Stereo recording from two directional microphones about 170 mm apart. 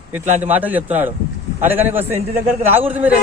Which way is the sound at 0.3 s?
45° right (ahead or behind).